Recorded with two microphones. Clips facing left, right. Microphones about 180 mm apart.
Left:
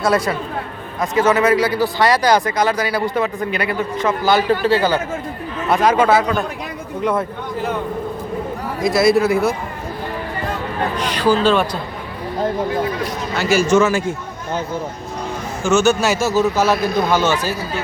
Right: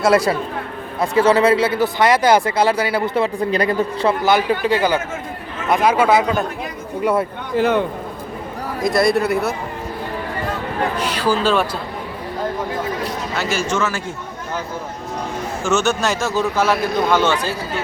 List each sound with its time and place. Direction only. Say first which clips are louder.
0.9 s speech: right 1 dB; 30° right (ahead or behind)
3.5 s speech: right 3 dB; 40° right (ahead or behind)
4.2 s speech: left 4 dB; 15° right (ahead or behind)
7.5 s a man's voice: right 7 dB; 85° right
8.8 s speech: left 2 dB; centre (ahead or behind)
10.9 s speech: left 5 dB; 5° right (ahead or behind)
13.3 s speech: left 8 dB; 5° left (ahead or behind)
15.6 s speech: left 4 dB; centre (ahead or behind)